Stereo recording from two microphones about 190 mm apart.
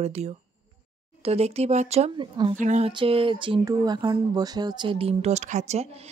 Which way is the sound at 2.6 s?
40° right (ahead or behind).